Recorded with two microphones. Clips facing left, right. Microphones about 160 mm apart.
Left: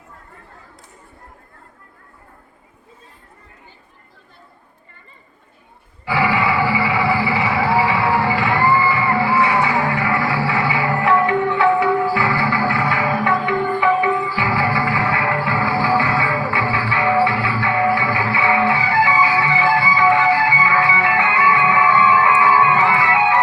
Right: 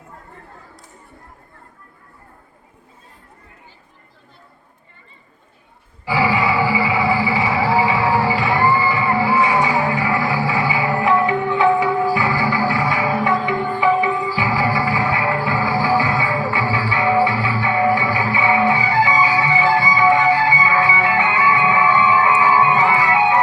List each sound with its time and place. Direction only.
6.1 s music: 15° right (ahead or behind)